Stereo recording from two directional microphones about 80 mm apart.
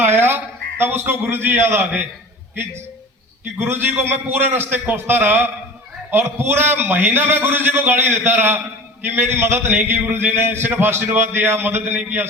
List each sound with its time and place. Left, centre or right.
0.0 s a man's voice: right
3.6 s a man's voice: right